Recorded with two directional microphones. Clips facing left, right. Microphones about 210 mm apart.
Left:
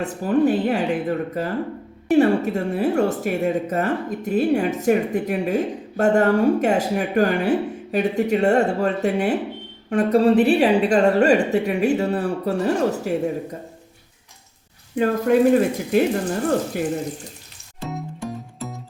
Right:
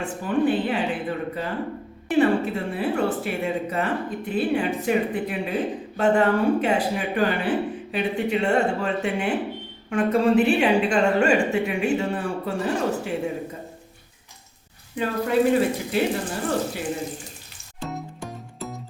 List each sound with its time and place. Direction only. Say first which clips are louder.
0.0 s a woman's voice: left 4 dB; 40° left (ahead or behind)
14.9 s a woman's voice: left 5 dB; 50° left (ahead or behind)
17.7 s music: left 2 dB; centre (ahead or behind)